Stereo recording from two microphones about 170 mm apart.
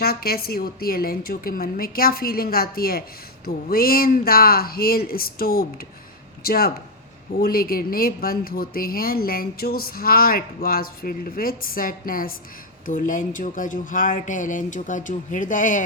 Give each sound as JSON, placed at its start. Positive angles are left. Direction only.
{"t": 0.0, "sound": "speech", "side_deg": 65}